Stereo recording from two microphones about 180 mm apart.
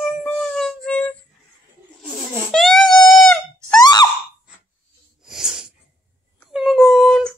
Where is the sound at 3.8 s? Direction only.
25° left (ahead or behind).